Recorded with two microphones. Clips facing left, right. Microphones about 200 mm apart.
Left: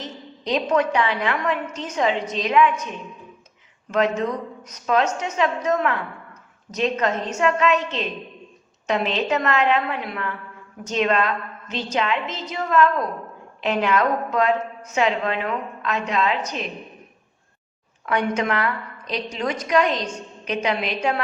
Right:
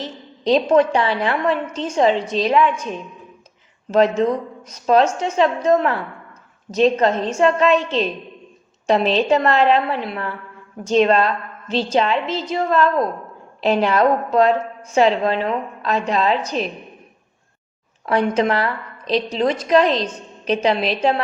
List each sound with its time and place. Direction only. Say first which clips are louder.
0.0 s a woman's voice: right 7 dB; 30° right (ahead or behind)
18.0 s a woman's voice: right 5 dB; 30° right (ahead or behind)